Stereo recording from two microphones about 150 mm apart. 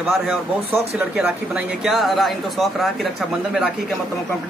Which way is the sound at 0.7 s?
10° right (ahead or behind).